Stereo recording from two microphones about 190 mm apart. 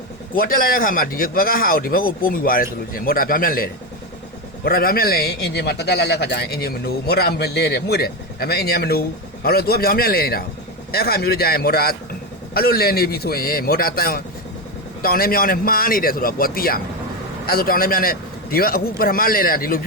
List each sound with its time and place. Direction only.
0.3 s a man's voice: 50° left (ahead or behind)